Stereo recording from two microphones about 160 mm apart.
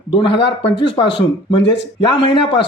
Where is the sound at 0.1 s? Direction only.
35° left (ahead or behind).